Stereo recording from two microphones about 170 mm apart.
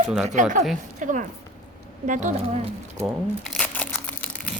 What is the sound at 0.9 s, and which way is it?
Speech, 45° right (ahead or behind).